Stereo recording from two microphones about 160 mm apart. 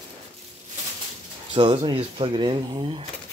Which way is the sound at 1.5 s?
35° right (ahead or behind).